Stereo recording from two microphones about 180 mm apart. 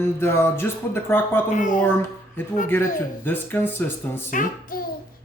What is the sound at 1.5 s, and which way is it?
Speech, 45° left (ahead or behind).